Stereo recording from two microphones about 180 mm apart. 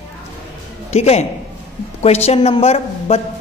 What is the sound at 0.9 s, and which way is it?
A woman's voice, 35° left (ahead or behind).